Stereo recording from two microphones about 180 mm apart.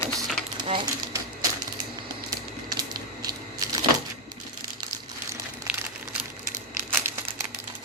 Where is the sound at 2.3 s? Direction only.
20° right (ahead or behind).